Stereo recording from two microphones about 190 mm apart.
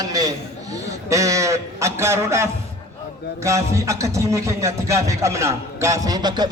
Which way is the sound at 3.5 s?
15° right (ahead or behind).